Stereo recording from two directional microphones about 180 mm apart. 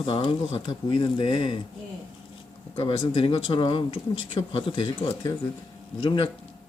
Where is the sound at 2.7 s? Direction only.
30° left (ahead or behind).